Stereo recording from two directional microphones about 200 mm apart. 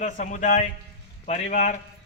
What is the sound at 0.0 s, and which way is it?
A man's voice, 40° left (ahead or behind).